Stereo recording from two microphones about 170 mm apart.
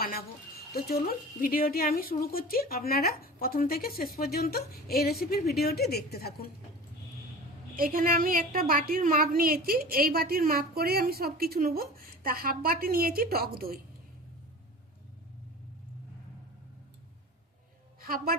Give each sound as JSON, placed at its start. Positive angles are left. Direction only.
{"t": 0.0, "sound": "a woman's voice", "side_deg": 60}
{"t": 7.8, "sound": "a woman's voice", "side_deg": -55}
{"t": 18.0, "sound": "a woman's voice", "side_deg": -60}